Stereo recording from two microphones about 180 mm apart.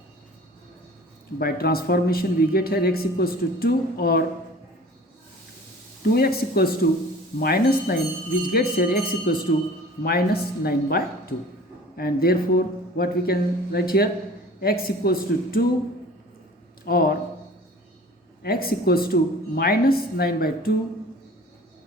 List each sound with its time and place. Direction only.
1.4 s speech: 55° left (ahead or behind)
6.1 s speech: 60° left (ahead or behind)
16.8 s speech: 55° left (ahead or behind)
18.4 s speech: 60° left (ahead or behind)